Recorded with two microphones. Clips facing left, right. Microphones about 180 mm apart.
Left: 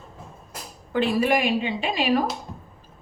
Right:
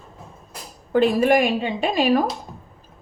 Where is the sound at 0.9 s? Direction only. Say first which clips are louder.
Right 5 dB; 45° right (ahead or behind).